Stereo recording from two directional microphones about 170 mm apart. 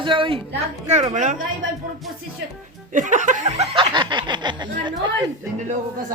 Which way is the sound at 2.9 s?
45° right (ahead or behind).